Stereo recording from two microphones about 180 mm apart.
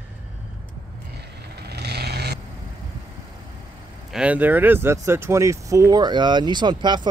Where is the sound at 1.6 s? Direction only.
65° right (ahead or behind).